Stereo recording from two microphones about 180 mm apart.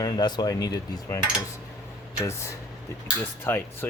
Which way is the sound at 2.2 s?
15° left (ahead or behind).